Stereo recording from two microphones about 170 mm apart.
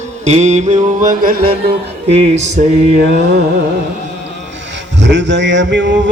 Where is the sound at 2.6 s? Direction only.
55° right (ahead or behind).